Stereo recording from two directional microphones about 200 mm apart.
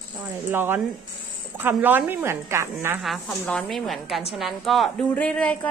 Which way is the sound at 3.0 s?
Centre (ahead or behind).